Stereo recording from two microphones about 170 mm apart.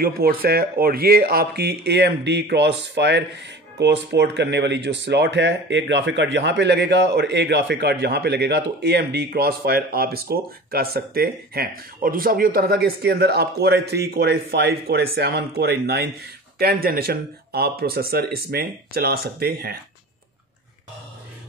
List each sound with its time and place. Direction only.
0.0 s speech: 60° right (ahead or behind)